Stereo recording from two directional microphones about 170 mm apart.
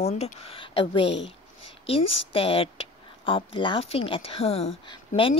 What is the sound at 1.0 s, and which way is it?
Speech, 90° left.